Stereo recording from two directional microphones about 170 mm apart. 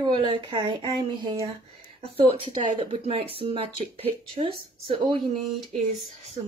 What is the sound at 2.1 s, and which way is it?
Speech, 30° right (ahead or behind).